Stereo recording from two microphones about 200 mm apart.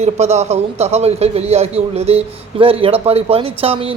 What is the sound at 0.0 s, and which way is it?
A man's voice, 35° right (ahead or behind).